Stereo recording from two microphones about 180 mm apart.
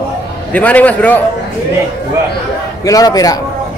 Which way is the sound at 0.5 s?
10° left (ahead or behind).